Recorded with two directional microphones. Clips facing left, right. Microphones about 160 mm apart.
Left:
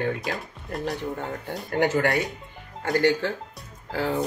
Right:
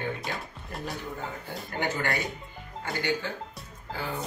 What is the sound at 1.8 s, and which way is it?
Speech, 80° left.